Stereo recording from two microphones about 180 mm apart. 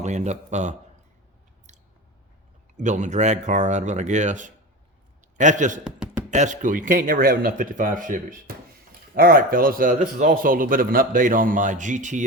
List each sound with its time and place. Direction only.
0.0 s speech: 40° right (ahead or behind)
2.7 s a man's voice: 40° right (ahead or behind)